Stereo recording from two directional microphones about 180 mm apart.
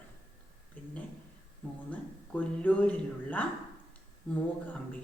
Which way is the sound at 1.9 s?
10° left (ahead or behind).